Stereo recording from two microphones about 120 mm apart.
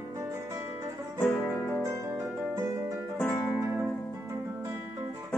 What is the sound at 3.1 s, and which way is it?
Music, 15° left (ahead or behind).